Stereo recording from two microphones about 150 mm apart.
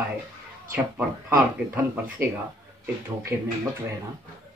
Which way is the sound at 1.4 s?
10° right (ahead or behind).